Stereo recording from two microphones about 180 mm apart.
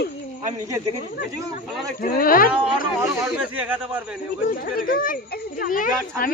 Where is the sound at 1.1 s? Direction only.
55° left (ahead or behind).